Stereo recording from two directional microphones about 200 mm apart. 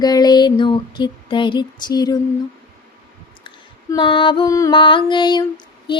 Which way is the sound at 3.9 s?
25° left (ahead or behind).